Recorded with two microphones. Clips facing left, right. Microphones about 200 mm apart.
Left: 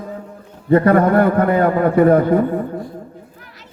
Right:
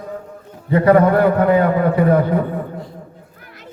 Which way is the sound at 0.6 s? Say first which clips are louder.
Even; 50° left (ahead or behind).